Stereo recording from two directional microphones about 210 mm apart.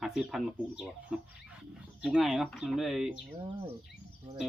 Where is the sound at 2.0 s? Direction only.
5° right (ahead or behind).